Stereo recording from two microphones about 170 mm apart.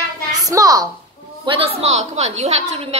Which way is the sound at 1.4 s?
35° right (ahead or behind).